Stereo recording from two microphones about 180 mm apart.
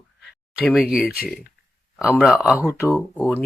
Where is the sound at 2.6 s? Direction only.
15° left (ahead or behind).